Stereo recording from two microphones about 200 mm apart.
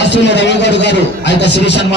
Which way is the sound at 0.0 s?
60° left (ahead or behind).